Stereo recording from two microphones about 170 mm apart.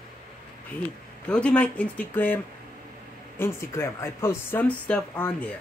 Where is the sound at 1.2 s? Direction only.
5° left (ahead or behind).